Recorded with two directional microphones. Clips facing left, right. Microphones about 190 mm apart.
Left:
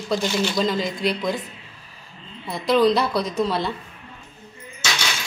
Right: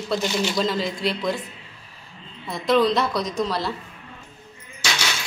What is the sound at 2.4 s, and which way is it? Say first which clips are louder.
Speech: left 1 dB; centre (ahead or behind).